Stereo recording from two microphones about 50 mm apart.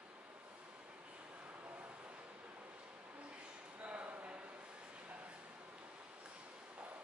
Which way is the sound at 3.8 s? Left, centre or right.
Right.